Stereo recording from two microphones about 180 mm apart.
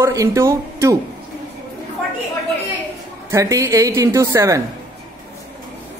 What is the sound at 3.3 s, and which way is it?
Speech, 15° right (ahead or behind).